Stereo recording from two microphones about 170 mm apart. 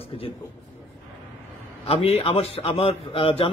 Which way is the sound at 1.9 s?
35° left (ahead or behind).